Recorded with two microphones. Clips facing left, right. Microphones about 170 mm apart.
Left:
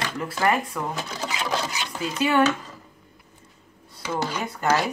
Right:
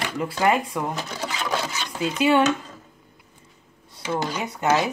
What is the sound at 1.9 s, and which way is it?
Speech, 20° right (ahead or behind).